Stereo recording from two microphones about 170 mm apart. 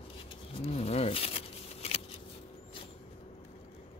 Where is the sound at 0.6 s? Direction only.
35° left (ahead or behind).